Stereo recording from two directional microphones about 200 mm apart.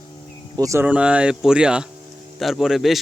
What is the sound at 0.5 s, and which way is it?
Speech, 15° right (ahead or behind).